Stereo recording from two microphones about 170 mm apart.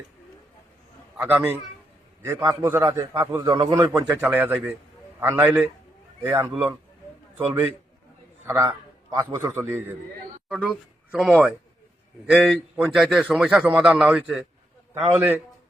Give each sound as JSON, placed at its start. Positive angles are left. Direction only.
{"t": 1.1, "sound": "a man's voice", "side_deg": -10}